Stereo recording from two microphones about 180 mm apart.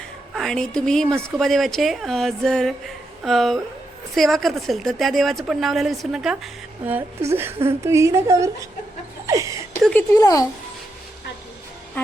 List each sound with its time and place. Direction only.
0.3 s a woman's voice: centre (ahead or behind); by 8.4 s 15° right (ahead or behind)
9.2 s a sound: 20° right (ahead or behind)
10.1 s speech: 20° left (ahead or behind)